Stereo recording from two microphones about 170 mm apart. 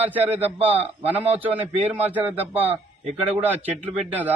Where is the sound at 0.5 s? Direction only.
35° right (ahead or behind).